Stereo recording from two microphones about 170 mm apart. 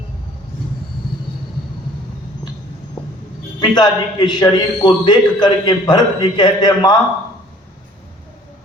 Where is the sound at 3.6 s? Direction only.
25° left (ahead or behind).